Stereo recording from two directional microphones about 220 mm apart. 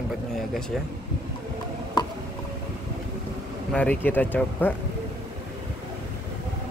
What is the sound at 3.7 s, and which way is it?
Speech, 5° left (ahead or behind).